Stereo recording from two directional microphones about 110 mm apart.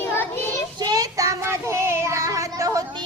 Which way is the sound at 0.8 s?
35° right (ahead or behind).